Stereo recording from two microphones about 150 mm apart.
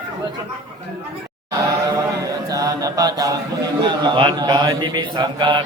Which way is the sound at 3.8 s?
30° right (ahead or behind).